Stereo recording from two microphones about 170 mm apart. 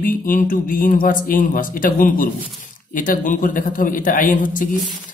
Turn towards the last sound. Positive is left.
turn(degrees=50)  # may be behind; listen again after turning